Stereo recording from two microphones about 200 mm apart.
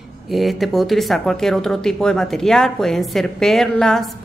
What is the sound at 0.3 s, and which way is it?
Speech, centre (ahead or behind).